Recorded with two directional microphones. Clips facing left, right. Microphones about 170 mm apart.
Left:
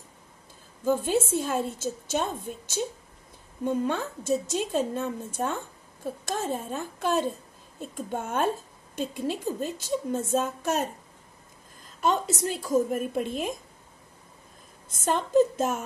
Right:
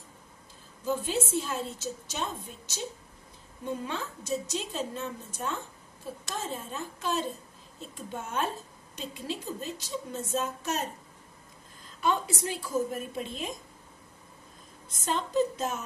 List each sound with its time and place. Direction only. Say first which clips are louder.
0.8 s a woman's voice: left 6 dB; 50° left (ahead or behind)
12.0 s a woman's voice: left 3 dB; 40° left (ahead or behind)
14.9 s a woman's voice: left 5 dB; 50° left (ahead or behind)